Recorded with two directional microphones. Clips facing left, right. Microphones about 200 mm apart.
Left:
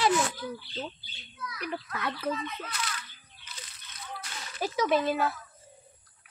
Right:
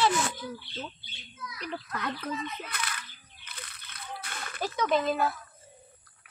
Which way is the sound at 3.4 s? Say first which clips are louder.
Right 2 dB; 60° right (ahead or behind).